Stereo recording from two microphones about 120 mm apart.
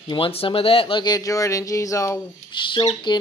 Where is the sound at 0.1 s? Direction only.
50° left (ahead or behind); by 2.1 s 25° left (ahead or behind).